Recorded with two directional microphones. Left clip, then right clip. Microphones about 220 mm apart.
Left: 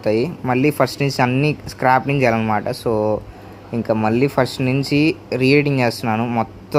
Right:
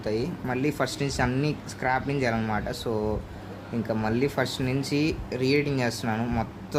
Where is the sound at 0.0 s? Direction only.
35° left (ahead or behind).